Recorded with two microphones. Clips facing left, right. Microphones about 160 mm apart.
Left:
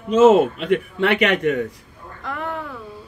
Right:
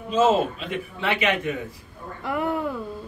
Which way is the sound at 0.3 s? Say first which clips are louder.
Left 7 dB; 60° left (ahead or behind).